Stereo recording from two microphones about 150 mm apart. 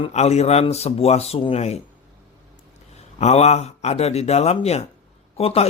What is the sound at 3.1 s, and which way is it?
A man's voice, 45° left (ahead or behind).